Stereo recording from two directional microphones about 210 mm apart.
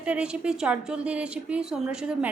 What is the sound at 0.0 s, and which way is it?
A woman's voice, 5° right (ahead or behind).